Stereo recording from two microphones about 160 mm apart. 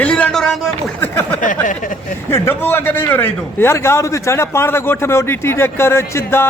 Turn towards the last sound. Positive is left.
turn(degrees=15)  # may be behind; listen again after turning